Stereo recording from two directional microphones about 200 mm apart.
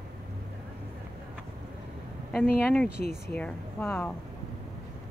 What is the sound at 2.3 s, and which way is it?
Speech, 5° left (ahead or behind).